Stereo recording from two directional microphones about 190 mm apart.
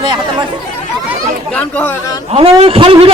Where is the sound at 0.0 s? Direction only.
25° right (ahead or behind).